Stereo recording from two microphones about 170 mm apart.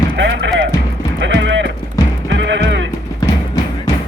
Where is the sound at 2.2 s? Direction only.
90° right.